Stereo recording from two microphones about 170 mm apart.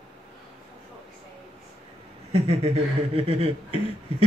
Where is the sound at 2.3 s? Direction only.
35° right (ahead or behind).